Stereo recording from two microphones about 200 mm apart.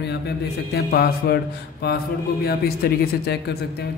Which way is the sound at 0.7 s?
50° left (ahead or behind).